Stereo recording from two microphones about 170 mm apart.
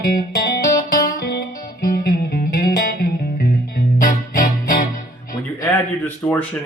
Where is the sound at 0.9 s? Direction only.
60° left (ahead or behind).